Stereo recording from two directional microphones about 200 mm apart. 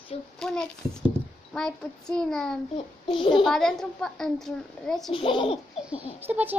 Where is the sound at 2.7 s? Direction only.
25° left (ahead or behind).